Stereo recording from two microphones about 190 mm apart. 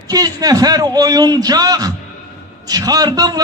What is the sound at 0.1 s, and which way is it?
A man's voice, 20° right (ahead or behind).